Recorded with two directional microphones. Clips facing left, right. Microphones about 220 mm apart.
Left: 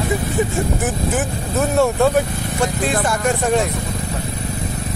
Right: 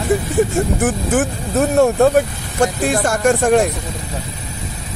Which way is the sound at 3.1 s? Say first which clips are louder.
Right 7 dB; 50° right (ahead or behind).